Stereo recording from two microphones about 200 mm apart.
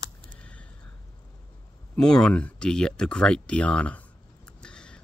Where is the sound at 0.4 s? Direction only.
5° left (ahead or behind).